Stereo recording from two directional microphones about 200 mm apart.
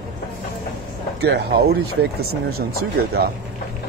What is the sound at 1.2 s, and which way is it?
Speech, 55° right (ahead or behind).